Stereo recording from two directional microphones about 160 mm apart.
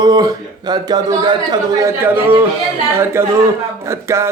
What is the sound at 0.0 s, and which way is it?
Speech, 25° right (ahead or behind).